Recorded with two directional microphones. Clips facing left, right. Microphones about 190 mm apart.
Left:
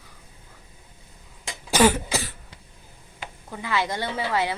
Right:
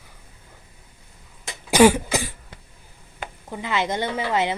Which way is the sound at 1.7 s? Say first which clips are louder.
Right 5 dB; 15° right (ahead or behind).